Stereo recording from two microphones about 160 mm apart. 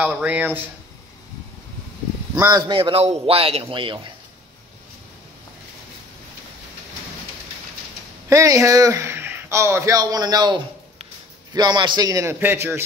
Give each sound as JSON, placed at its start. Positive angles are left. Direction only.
{"t": 0.0, "sound": "speech", "side_deg": -10}
{"t": 2.3, "sound": "a man's voice", "side_deg": -15}
{"t": 2.7, "sound": "a man's voice", "side_deg": -35}
{"t": 8.3, "sound": "speech", "side_deg": -20}